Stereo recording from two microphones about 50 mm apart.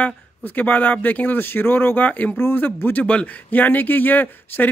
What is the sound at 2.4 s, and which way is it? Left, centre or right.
Speech, left.